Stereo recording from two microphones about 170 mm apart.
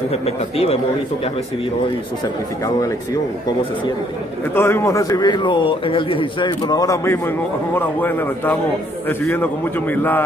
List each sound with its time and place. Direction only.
0.1 s speech: 35° left (ahead or behind)
4.6 s a man's voice: 15° left (ahead or behind)